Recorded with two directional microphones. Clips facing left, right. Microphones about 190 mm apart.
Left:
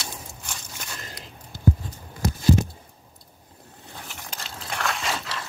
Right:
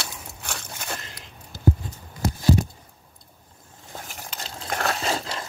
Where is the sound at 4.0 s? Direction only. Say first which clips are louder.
Even; 40° right (ahead or behind).